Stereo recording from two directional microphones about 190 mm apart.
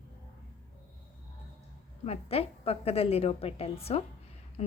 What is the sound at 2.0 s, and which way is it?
A woman's voice, 35° left (ahead or behind).